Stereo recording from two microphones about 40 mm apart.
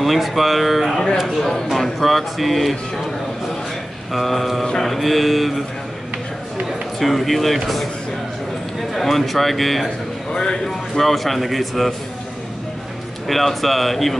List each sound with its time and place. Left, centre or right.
0.0 s speech: centre
4.1 s speech: centre
7.0 s speech: centre
8.9 s speech: centre
10.3 s speech: centre
11.0 s speech: centre
13.3 s speech: centre